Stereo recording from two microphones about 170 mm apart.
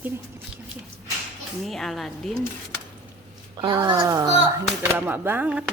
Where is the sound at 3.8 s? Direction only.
20° right (ahead or behind).